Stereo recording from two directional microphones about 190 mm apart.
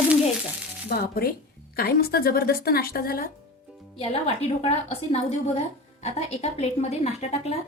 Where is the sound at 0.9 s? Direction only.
55° left (ahead or behind).